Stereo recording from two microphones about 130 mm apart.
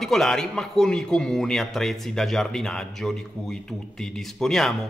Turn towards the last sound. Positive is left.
turn(degrees=5)  # may be behind; listen again after turning